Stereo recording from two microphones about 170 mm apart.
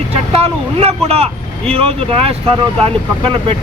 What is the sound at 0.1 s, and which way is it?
Speech, 35° right (ahead or behind).